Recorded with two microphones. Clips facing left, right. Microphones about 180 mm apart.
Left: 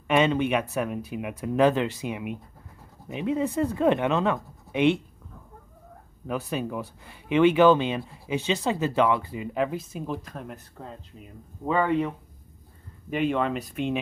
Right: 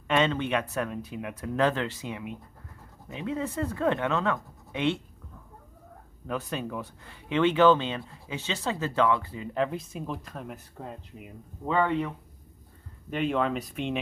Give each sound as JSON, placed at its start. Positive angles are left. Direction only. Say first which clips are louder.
{"t": 0.1, "sound": "speech", "louder": "left 3 dB", "side_deg": 10}
{"t": 6.2, "sound": "speech", "louder": "left 3 dB", "side_deg": 10}
{"t": 10.8, "sound": "speech", "louder": "right 1 dB", "side_deg": -10}
{"t": 11.6, "sound": "speech", "louder": "left 2 dB", "side_deg": 10}
{"t": 13.1, "sound": "speech", "louder": "left 2 dB", "side_deg": 0}